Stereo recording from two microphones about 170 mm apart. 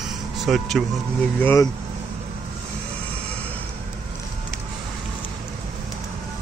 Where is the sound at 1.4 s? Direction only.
15° left (ahead or behind).